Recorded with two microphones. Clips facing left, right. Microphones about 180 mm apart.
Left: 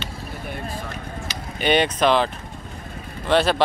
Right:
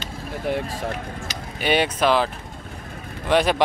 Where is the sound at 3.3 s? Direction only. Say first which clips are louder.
Even; 15° right (ahead or behind).